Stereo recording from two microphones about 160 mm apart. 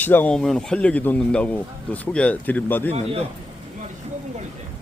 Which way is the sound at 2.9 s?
40° right (ahead or behind).